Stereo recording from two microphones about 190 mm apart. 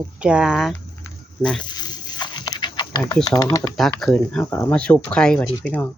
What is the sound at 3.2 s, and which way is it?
Speech, 20° left (ahead or behind).